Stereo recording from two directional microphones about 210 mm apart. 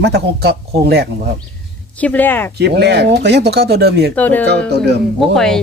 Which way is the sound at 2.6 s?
50° right (ahead or behind).